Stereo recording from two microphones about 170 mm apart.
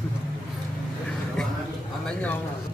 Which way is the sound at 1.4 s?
5° left (ahead or behind).